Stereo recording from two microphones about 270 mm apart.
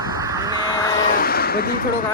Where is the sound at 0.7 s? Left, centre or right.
Centre.